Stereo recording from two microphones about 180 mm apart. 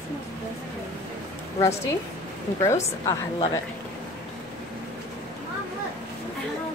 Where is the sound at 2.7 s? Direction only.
20° left (ahead or behind).